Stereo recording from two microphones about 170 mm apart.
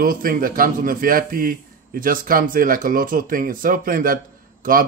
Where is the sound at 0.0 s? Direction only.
55° right (ahead or behind).